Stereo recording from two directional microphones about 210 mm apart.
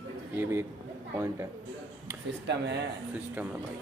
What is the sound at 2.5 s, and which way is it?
Speech, 55° right (ahead or behind).